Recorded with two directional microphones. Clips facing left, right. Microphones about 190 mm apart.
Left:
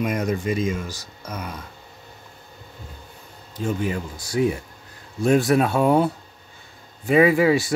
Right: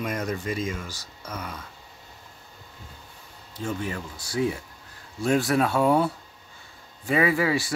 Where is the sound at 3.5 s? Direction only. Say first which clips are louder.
Left 5 dB; 15° left (ahead or behind).